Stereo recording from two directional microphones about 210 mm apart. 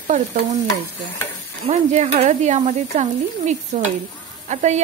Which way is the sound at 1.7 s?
35° right (ahead or behind).